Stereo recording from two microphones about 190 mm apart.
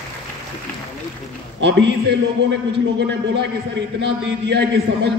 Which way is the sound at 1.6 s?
65° right (ahead or behind).